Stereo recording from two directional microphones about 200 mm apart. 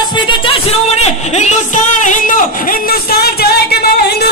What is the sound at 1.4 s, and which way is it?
Music, 35° left (ahead or behind).